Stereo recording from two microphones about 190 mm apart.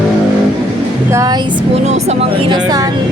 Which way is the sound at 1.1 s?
15° right (ahead or behind).